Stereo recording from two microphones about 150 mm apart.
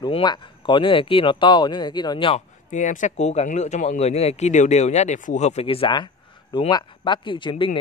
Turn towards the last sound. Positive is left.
turn(degrees=30)  # may be behind; listen again after turning